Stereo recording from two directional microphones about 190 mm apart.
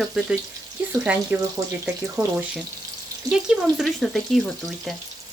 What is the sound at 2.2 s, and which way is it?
Speech, 10° right (ahead or behind).